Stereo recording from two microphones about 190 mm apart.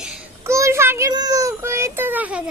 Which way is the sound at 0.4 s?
15° right (ahead or behind).